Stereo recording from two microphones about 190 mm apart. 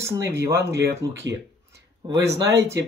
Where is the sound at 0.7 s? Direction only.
60° right (ahead or behind).